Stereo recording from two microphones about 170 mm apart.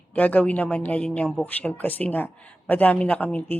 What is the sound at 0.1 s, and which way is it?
Speech, 10° left (ahead or behind).